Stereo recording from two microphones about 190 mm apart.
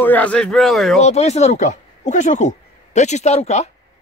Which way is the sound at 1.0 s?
35° left (ahead or behind).